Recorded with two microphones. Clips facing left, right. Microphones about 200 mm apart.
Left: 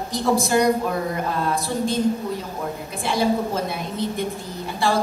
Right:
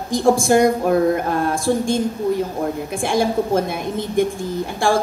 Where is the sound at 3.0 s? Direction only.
50° right (ahead or behind).